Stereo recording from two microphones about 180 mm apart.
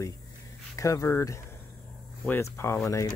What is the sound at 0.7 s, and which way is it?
Speech, 15° left (ahead or behind).